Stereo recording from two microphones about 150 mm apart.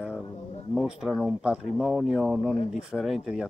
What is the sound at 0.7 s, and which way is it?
Speech, centre (ahead or behind).